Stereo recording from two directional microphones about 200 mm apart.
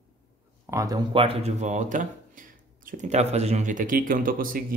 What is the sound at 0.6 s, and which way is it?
Speech, 15° right (ahead or behind).